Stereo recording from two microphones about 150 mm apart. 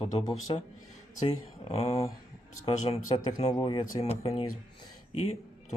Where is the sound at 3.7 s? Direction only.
30° left (ahead or behind).